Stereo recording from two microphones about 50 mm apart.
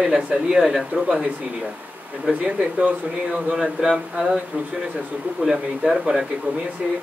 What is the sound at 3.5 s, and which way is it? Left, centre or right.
Speech, centre.